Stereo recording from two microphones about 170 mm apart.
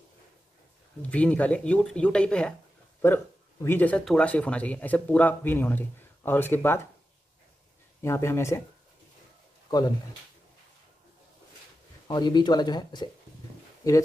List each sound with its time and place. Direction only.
1.1 s speech: 10° left (ahead or behind)
3.6 s speech: 10° left (ahead or behind)
8.0 s speech: 15° left (ahead or behind)
9.7 s speech: 20° left (ahead or behind)
12.1 s speech: 25° left (ahead or behind)